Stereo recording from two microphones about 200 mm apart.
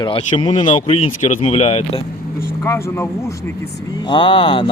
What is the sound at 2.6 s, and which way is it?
A man's voice, 15° left (ahead or behind).